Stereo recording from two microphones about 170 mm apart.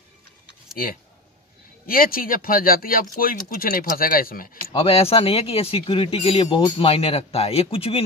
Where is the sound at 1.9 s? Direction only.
60° left (ahead or behind).